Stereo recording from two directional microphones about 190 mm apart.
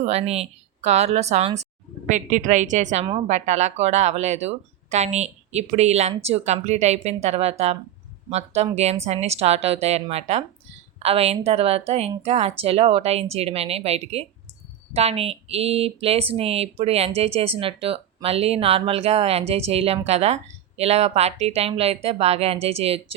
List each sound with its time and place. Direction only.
0.0 s speech: 35° right (ahead or behind)